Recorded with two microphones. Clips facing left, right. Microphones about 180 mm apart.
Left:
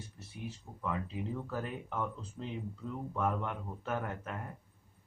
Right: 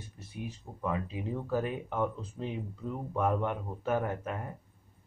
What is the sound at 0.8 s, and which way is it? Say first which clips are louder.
Speech: right 3 dB; 15° right (ahead or behind).